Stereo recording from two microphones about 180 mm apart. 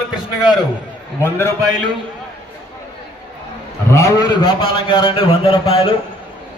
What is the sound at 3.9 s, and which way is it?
A man's voice, 15° left (ahead or behind).